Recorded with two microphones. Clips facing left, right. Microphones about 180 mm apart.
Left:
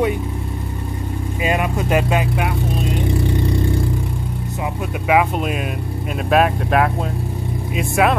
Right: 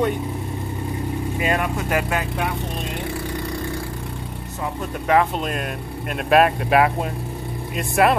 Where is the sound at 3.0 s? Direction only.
20° left (ahead or behind).